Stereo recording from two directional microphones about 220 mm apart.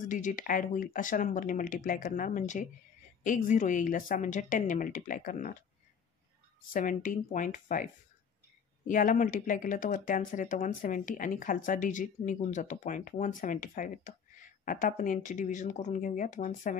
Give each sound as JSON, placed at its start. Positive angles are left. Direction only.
{"t": 0.1, "sound": "speech", "side_deg": 35}
{"t": 6.7, "sound": "speech", "side_deg": 40}